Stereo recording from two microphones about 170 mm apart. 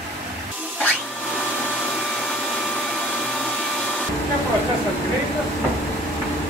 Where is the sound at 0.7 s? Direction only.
Centre (ahead or behind).